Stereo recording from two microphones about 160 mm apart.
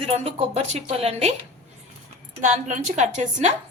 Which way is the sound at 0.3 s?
40° right (ahead or behind).